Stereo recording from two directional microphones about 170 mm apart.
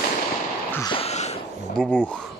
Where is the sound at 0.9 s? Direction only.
35° left (ahead or behind).